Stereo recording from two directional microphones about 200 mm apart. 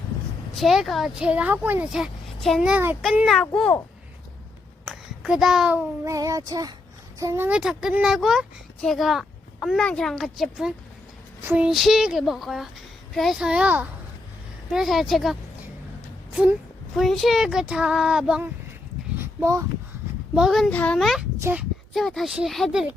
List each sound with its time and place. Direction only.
0.5 s speech: centre (ahead or behind)
4.9 s a sound: 5° right (ahead or behind)
6.1 s child singing: 15° right (ahead or behind)
7.2 s speech: 15° right (ahead or behind)
19.2 s a sound: 15° right (ahead or behind)
20.3 s speech: centre (ahead or behind)